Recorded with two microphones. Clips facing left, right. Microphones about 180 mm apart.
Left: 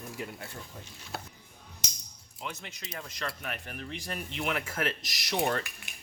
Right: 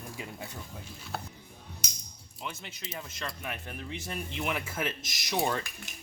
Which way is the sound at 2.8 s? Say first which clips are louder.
Even; 5° right (ahead or behind).